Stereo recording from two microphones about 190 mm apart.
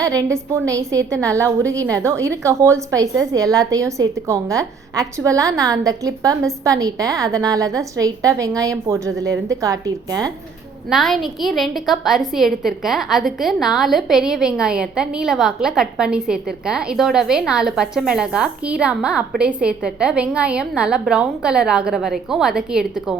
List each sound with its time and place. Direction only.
0.0 s a woman's voice: 20° right (ahead or behind)
10.8 s a woman's voice: centre (ahead or behind)